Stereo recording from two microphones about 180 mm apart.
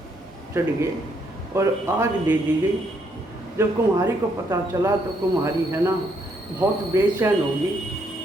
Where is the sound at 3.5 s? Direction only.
15° right (ahead or behind).